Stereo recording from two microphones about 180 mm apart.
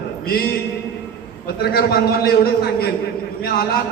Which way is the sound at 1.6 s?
60° left (ahead or behind).